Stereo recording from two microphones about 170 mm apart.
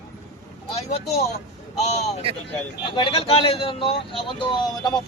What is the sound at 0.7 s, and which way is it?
Speech, 40° left (ahead or behind).